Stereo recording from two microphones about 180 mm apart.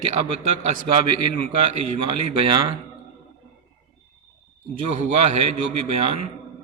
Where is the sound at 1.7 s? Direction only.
35° right (ahead or behind).